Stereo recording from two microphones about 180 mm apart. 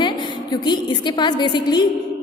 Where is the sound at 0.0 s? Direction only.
25° left (ahead or behind).